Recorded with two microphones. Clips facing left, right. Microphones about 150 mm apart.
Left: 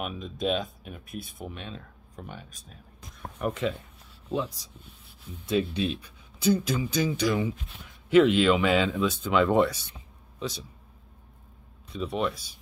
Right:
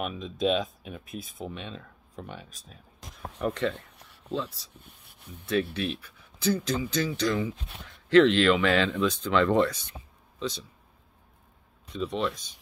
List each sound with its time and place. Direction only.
0.0 s speech: centre (ahead or behind)
11.9 s speech: 5° left (ahead or behind)